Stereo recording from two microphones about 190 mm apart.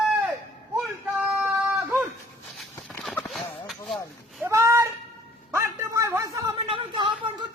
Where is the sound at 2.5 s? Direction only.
Centre (ahead or behind).